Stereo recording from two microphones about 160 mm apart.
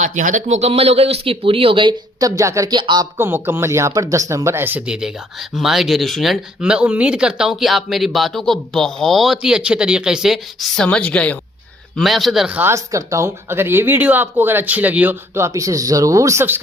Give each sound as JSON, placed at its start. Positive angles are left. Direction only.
{"t": 0.0, "sound": "speech", "side_deg": -50}
{"t": 3.2, "sound": "a woman's voice", "side_deg": -15}